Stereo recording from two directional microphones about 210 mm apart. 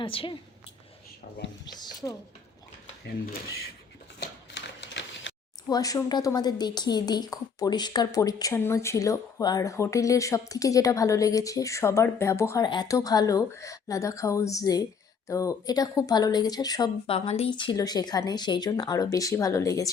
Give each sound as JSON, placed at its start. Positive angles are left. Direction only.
{"t": 0.0, "sound": "speech", "side_deg": 25}
{"t": 1.6, "sound": "speech", "side_deg": 20}
{"t": 4.2, "sound": "a sound", "side_deg": 55}
{"t": 5.6, "sound": "speech", "side_deg": 15}